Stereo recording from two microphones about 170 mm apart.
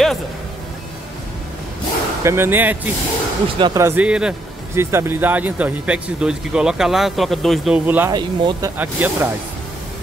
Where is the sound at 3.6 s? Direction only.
25° right (ahead or behind).